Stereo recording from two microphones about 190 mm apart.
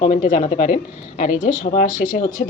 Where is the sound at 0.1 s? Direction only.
40° left (ahead or behind).